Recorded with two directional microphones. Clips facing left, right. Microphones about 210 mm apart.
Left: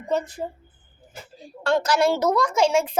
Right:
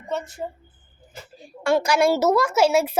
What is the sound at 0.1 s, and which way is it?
Speech, 35° left (ahead or behind).